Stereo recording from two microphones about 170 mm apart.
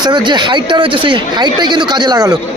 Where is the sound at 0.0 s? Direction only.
25° right (ahead or behind).